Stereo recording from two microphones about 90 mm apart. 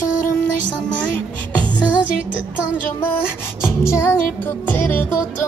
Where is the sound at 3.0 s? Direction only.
25° left (ahead or behind).